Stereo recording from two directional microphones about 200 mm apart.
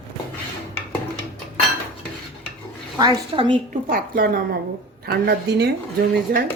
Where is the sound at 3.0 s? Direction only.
25° right (ahead or behind).